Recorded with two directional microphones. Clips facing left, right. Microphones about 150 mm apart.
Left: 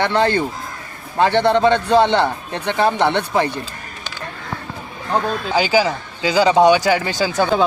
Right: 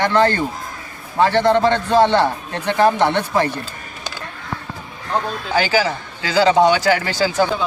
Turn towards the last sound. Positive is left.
turn(degrees=15)  # may be behind; listen again after turning